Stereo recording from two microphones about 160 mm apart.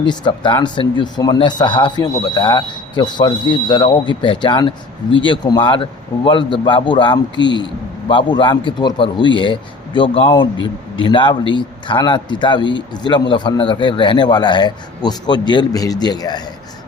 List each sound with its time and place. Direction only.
0.0 s a man's voice: 30° left (ahead or behind)